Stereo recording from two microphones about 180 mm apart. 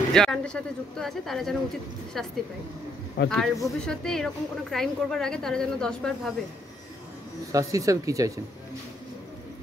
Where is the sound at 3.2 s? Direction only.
75° left (ahead or behind).